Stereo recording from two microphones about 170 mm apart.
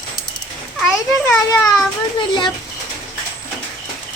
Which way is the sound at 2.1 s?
25° left (ahead or behind).